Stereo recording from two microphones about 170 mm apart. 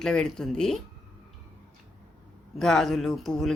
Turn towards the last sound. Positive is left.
turn(degrees=0)  # may be behind; listen again after turning